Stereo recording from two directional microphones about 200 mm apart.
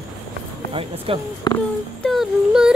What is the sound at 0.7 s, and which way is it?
Speech, 25° right (ahead or behind).